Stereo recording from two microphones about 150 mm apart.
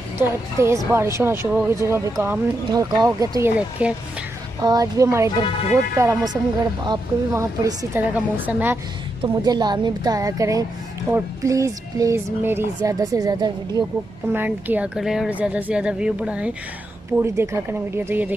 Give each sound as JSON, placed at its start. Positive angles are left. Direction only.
{"t": 0.6, "sound": "speech", "side_deg": -20}
{"t": 3.8, "sound": "speech", "side_deg": -10}
{"t": 4.6, "sound": "speech", "side_deg": -25}
{"t": 8.1, "sound": "speech", "side_deg": -10}
{"t": 9.2, "sound": "speech", "side_deg": -30}
{"t": 14.3, "sound": "speech", "side_deg": -10}